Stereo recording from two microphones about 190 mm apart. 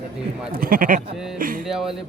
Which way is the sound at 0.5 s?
50° right (ahead or behind).